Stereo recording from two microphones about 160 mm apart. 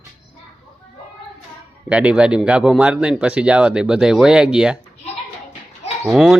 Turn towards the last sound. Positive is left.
turn(degrees=-5)  # may be behind; listen again after turning